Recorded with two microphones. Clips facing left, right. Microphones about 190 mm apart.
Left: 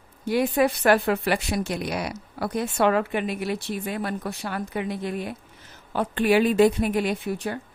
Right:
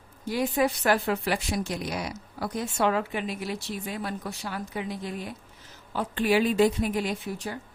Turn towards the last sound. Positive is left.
turn(degrees=65)  # may be behind; listen again after turning